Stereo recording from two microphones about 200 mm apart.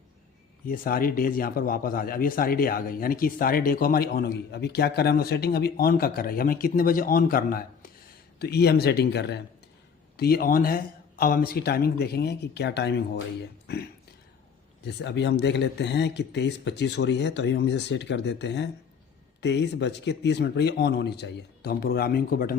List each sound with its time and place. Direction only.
0.7 s speech: 45° left (ahead or behind)
14.8 s speech: 60° left (ahead or behind)